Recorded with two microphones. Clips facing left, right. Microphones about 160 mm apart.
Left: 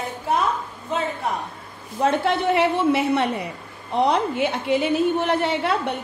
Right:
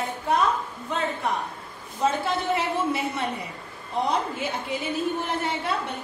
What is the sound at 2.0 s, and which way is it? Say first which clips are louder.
Speech: left 5 dB; 65° left (ahead or behind).